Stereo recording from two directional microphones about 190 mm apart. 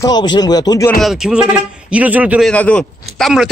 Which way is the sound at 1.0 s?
Centre (ahead or behind).